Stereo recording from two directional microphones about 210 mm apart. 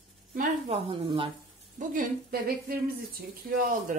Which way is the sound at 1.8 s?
45° right (ahead or behind).